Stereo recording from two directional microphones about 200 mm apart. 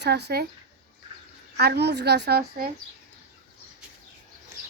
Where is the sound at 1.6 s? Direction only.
55° right (ahead or behind).